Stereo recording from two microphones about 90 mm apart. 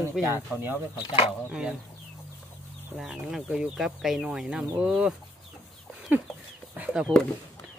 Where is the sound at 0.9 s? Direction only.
75° left (ahead or behind).